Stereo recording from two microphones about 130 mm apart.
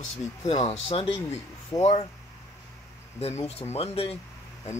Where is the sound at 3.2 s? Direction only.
55° left (ahead or behind).